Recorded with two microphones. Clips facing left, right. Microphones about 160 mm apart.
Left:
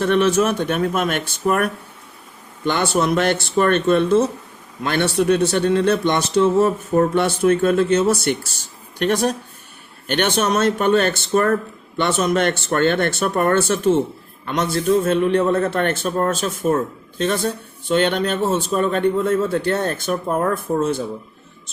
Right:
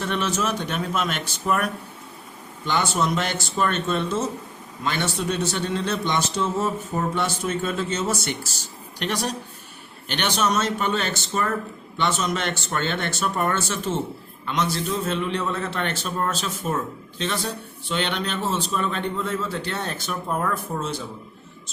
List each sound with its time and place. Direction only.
0.0 s a man's voice: 60° left (ahead or behind)